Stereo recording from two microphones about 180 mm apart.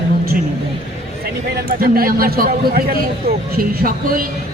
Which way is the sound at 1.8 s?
55° right (ahead or behind).